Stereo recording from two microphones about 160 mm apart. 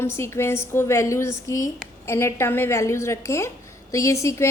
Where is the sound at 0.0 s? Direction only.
15° left (ahead or behind).